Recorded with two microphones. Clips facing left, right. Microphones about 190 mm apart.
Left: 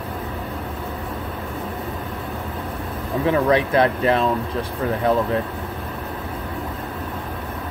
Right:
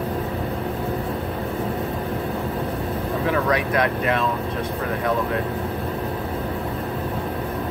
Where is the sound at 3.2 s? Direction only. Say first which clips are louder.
Left 5 dB; 30° left (ahead or behind).